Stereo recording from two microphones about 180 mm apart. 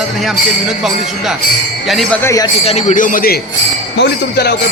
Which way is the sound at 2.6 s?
40° left (ahead or behind).